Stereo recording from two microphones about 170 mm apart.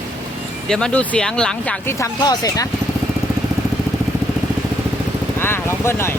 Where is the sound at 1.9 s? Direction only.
20° left (ahead or behind).